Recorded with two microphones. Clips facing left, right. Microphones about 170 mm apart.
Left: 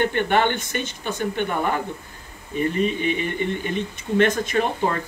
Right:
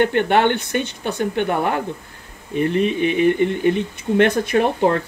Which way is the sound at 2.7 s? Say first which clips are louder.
Right 5 dB; 65° right (ahead or behind).